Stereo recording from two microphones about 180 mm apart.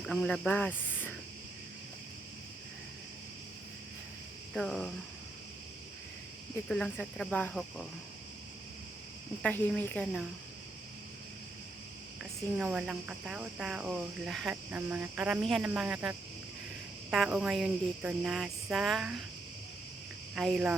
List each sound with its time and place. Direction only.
0.0 s speech: 5° left (ahead or behind)
4.5 s speech: centre (ahead or behind)
6.7 s speech: 5° left (ahead or behind)
9.4 s cricket: 10° left (ahead or behind)
12.2 s speech: 5° right (ahead or behind)
20.3 s speech: 5° right (ahead or behind)